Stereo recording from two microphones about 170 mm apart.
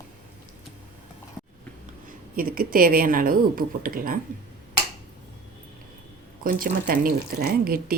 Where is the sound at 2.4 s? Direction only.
55° right (ahead or behind).